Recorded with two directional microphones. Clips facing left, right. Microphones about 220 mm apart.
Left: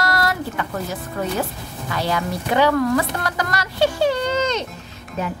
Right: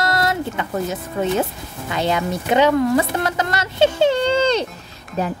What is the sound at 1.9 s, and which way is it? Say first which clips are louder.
A woman's voice: right 3 dB; 20° right (ahead or behind).